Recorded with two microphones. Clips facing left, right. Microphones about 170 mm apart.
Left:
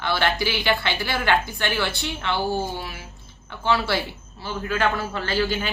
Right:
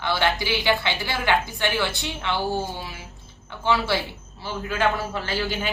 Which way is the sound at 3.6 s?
20° right (ahead or behind).